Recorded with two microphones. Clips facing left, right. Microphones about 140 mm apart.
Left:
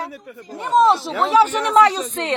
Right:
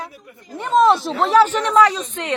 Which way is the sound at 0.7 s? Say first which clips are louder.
Right 1 dB; 5° left (ahead or behind).